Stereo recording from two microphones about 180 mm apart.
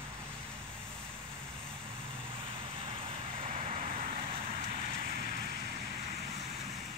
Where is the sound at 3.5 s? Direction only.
35° right (ahead or behind).